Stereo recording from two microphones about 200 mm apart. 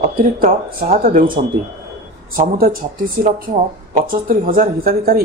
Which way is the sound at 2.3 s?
45° right (ahead or behind).